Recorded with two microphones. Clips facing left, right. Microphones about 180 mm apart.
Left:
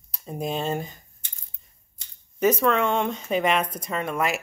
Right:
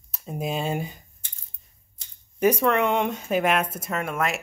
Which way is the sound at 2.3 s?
10° right (ahead or behind).